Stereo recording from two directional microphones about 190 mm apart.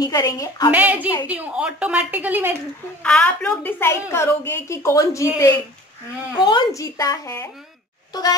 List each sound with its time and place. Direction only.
0.0 s a woman's voice: 20° left (ahead or behind)
0.7 s a woman's voice: 10° right (ahead or behind)
3.0 s a woman's voice: 5° left (ahead or behind)
6.3 s a woman's voice: 25° left (ahead or behind)